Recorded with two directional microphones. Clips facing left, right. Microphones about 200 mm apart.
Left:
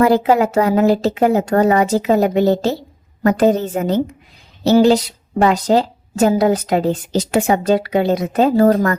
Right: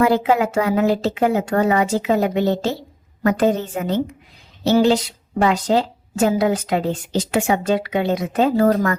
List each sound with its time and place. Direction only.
0.0 s a woman's voice: 40° left (ahead or behind)